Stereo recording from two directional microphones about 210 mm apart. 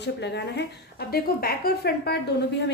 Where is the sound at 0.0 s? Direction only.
55° left (ahead or behind).